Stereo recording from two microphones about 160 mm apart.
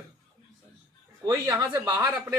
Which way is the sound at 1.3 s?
25° right (ahead or behind).